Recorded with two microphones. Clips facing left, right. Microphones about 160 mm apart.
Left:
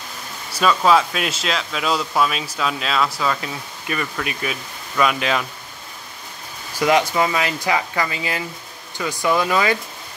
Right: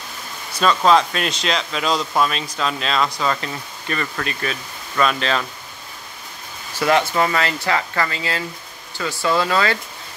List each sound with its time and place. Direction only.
0.5 s speech: 10° left (ahead or behind)
6.8 s speech: 15° left (ahead or behind)